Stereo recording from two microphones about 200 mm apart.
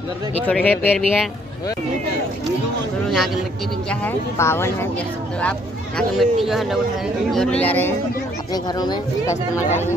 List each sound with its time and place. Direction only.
0.5 s speech: 10° left (ahead or behind)
3.9 s speech: 10° left (ahead or behind)
8.6 s speech: 20° left (ahead or behind)
9.3 s speech: 35° left (ahead or behind)